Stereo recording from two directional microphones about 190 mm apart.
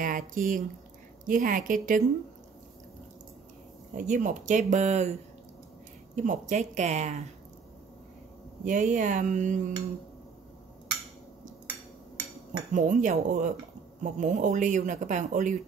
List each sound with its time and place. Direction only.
0.0 s a woman's voice: 45° right (ahead or behind)
3.9 s speech: 40° right (ahead or behind)
6.1 s speech: 40° right (ahead or behind)
8.6 s speech: 40° right (ahead or behind)
12.7 s speech: 40° right (ahead or behind)